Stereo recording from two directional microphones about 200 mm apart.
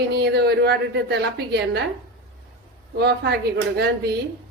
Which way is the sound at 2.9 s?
55° right (ahead or behind).